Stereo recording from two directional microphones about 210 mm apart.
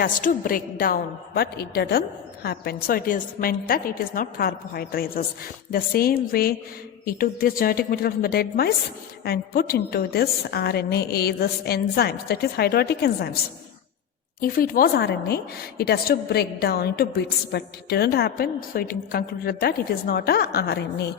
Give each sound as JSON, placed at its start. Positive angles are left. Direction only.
{"t": 0.0, "sound": "a woman's voice", "side_deg": 40}
{"t": 14.4, "sound": "a woman's voice", "side_deg": 45}